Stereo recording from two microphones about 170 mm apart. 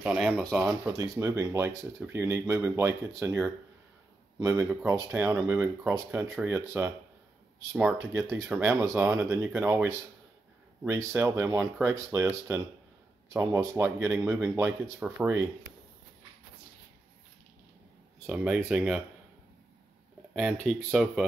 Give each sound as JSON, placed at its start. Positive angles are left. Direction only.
{"t": 0.0, "sound": "speech", "side_deg": -5}
{"t": 1.2, "sound": "speech", "side_deg": -15}
{"t": 18.2, "sound": "speech", "side_deg": -5}
{"t": 20.6, "sound": "speech", "side_deg": 0}